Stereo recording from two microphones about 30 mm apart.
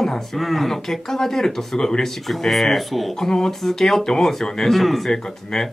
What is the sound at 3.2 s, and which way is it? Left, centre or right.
Speech, left.